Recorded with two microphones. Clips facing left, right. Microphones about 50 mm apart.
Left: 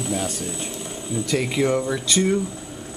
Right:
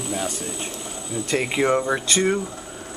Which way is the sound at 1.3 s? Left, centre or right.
Right.